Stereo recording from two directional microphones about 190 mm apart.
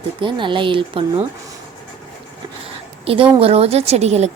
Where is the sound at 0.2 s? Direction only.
25° right (ahead or behind).